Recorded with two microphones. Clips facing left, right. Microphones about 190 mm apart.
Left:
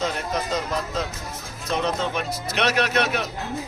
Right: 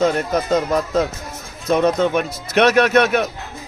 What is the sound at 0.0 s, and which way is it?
A man's voice, 50° right (ahead or behind).